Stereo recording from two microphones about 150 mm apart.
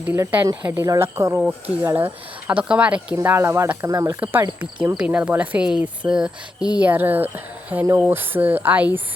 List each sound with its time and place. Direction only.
0.0 s speech: 10° right (ahead or behind)